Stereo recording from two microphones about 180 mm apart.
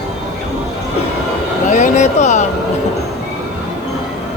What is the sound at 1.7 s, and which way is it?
Speech, 40° left (ahead or behind).